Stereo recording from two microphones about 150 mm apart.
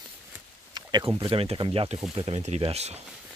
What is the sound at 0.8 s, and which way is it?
Speech, 30° right (ahead or behind).